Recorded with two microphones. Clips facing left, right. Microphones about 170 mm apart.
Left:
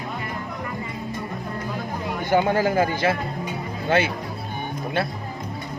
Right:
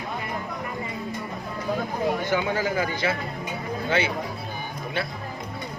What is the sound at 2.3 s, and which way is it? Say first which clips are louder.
A man's voice: left 5 dB; 50° left (ahead or behind).